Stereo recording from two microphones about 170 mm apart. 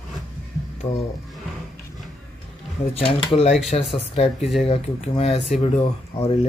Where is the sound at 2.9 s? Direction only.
35° left (ahead or behind).